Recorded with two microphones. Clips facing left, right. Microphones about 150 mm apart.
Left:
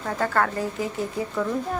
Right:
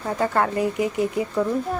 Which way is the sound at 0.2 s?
15° right (ahead or behind).